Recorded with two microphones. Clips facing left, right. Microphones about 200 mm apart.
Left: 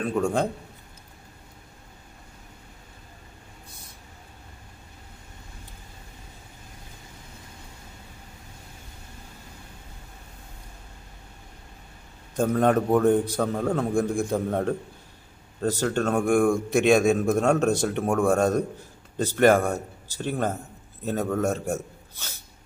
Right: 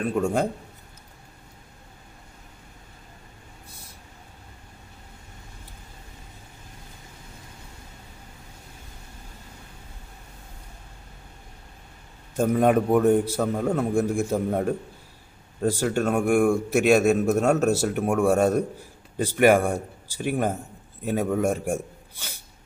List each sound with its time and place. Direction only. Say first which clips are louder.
0.1 s a man's voice: even; 10° right (ahead or behind)
12.4 s a man's voice: right 1 dB; 10° right (ahead or behind)